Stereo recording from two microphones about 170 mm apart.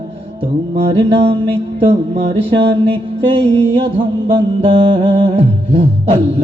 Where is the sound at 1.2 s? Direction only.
35° right (ahead or behind).